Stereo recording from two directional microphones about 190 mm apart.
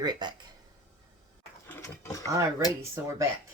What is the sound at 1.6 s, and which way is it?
Ratchet, 15° left (ahead or behind).